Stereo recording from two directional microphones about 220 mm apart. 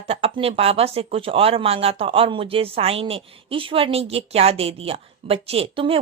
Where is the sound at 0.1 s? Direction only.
25° right (ahead or behind).